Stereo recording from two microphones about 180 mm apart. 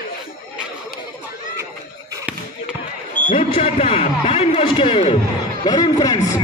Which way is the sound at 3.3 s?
30° left (ahead or behind).